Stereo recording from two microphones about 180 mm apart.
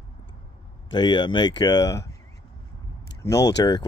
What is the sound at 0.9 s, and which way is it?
Speech, 25° left (ahead or behind).